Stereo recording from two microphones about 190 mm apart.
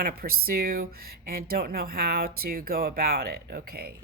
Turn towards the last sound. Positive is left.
turn(degrees=-55)  # may be behind; listen again after turning